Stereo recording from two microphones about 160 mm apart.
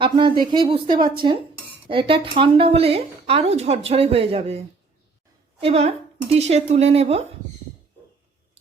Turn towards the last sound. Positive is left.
turn(degrees=-40)  # may be behind; listen again after turning